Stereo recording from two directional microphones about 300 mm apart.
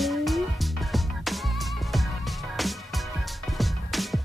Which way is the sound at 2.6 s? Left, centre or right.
Centre.